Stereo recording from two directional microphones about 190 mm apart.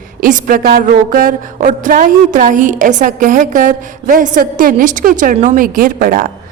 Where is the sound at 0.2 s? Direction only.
45° right (ahead or behind).